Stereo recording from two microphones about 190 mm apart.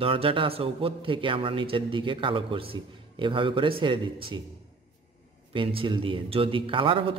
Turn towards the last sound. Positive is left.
turn(degrees=-25)  # may be behind; listen again after turning